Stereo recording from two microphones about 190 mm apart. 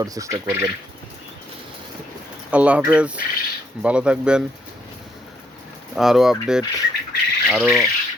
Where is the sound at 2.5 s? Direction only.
5° right (ahead or behind).